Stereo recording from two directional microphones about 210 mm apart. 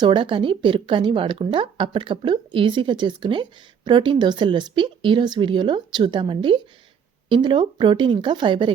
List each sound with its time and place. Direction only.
0.0 s a woman's voice: 25° right (ahead or behind)